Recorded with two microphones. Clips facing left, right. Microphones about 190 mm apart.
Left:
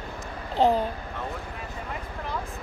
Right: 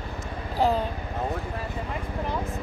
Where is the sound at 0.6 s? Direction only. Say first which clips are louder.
Left 2 dB; 20° left (ahead or behind).